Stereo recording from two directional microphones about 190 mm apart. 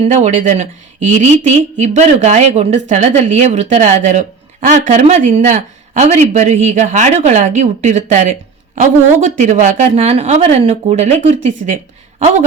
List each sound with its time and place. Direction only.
0.1 s a woman's voice: 35° right (ahead or behind)